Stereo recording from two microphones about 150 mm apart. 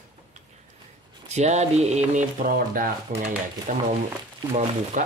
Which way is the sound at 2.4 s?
75° right (ahead or behind).